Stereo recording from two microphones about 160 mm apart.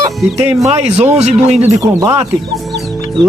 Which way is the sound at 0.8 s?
45° right (ahead or behind).